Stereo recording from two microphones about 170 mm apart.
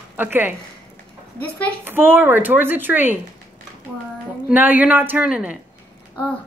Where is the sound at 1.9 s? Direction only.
10° right (ahead or behind).